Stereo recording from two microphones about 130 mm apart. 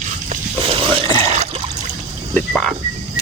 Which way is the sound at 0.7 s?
45° right (ahead or behind).